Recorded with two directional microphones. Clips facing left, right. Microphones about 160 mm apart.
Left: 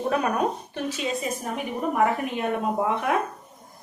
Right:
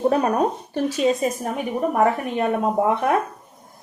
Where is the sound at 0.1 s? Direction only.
35° right (ahead or behind).